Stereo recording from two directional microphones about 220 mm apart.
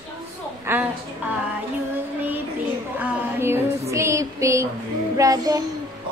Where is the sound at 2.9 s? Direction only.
10° right (ahead or behind).